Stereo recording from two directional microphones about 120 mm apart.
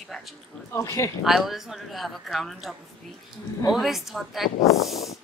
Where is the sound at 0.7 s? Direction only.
25° left (ahead or behind).